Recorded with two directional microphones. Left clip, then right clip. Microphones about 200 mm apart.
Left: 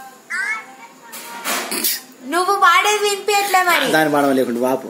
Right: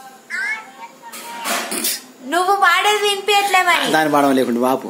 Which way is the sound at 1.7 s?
10° right (ahead or behind).